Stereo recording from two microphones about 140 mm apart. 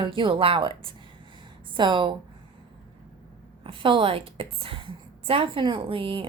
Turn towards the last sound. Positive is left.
turn(degrees=-40)  # may be behind; listen again after turning